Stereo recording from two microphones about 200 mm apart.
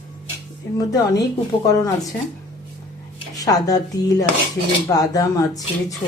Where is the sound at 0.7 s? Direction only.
15° left (ahead or behind).